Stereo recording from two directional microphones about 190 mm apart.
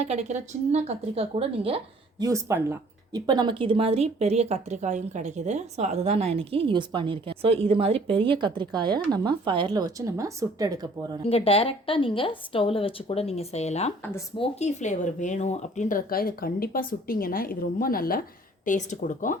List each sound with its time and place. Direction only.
0.0 s speech: 35° right (ahead or behind)
2.2 s speech: 15° right (ahead or behind)
11.3 s a woman's voice: 30° left (ahead or behind)